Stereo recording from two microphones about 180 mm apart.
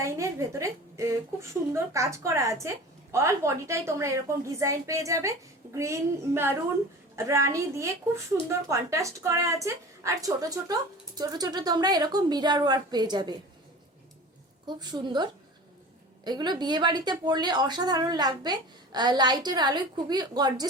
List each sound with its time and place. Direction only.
0.0 s a woman's voice: 15° right (ahead or behind)
14.7 s a woman's voice: 25° right (ahead or behind)